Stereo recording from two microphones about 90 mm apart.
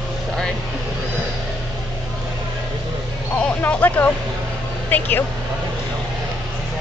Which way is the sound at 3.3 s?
15° left (ahead or behind).